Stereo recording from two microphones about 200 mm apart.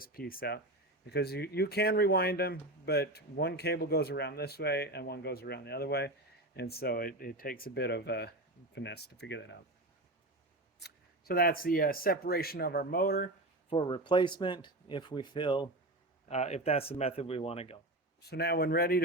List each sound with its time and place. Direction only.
0.0 s speech: 45° left (ahead or behind)
10.8 s speech: 50° left (ahead or behind)
13.7 s speech: 25° left (ahead or behind)
16.3 s speech: 35° left (ahead or behind)
18.2 s speech: 55° left (ahead or behind)